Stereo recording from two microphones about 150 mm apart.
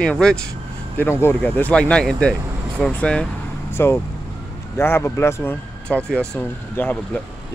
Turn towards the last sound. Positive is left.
turn(degrees=10)  # may be behind; listen again after turning